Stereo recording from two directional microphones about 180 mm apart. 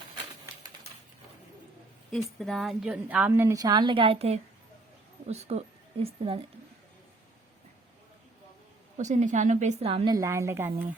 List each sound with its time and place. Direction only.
2.0 s a woman's voice: centre (ahead or behind); by 6.4 s 30° right (ahead or behind)
9.0 s a woman's voice: 40° right (ahead or behind)
10.2 s a woman's voice: 15° right (ahead or behind)